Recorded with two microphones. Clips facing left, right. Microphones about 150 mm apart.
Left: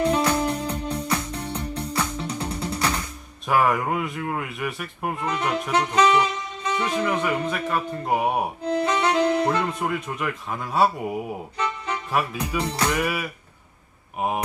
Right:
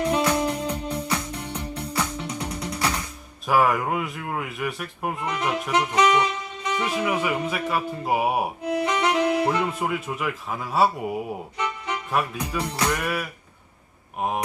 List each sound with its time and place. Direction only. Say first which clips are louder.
0.3 s music: even; 30° left (ahead or behind)
3.4 s speech: even; centre (ahead or behind)
5.9 s saxophone: left 2 dB; 30° left (ahead or behind)
6.8 s speech: left 1 dB; 10° right (ahead or behind)
8.6 s music: left 2 dB; 30° left (ahead or behind)
9.5 s speech: even; 5° right (ahead or behind)
11.5 s music: left 2 dB; 30° left (ahead or behind)
12.1 s speech: left 1 dB; centre (ahead or behind)